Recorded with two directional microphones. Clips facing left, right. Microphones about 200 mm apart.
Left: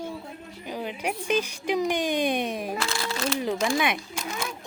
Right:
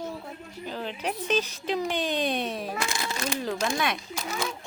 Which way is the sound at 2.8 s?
20° right (ahead or behind).